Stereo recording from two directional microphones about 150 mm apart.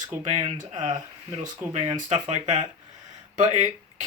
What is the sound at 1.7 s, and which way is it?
Speech, 45° right (ahead or behind).